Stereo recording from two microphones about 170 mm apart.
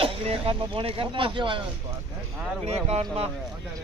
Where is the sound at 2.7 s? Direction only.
40° right (ahead or behind).